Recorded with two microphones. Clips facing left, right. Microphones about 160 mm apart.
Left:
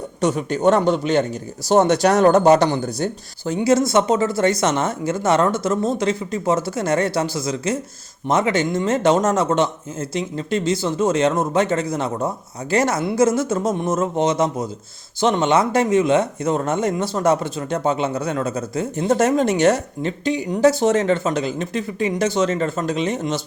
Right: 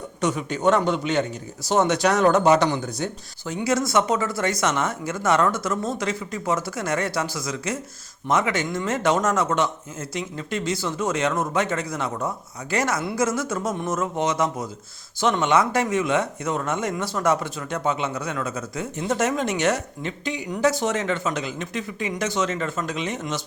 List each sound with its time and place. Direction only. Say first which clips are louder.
0.2 s speech: left 5 dB; 35° left (ahead or behind)